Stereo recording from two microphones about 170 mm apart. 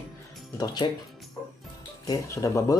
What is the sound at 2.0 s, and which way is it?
Speech, 15° left (ahead or behind).